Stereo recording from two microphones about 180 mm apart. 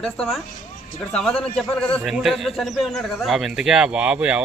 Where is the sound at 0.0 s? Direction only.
Centre (ahead or behind).